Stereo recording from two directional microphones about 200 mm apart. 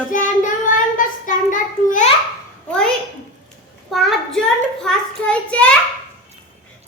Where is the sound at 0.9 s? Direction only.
40° left (ahead or behind).